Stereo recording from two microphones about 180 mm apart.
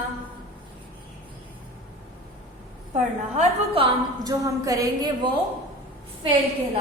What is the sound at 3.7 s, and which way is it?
Speech, 30° right (ahead or behind).